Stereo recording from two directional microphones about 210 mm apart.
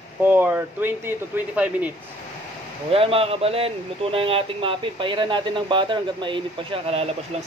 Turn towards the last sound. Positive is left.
turn(degrees=-30)  # may be behind; listen again after turning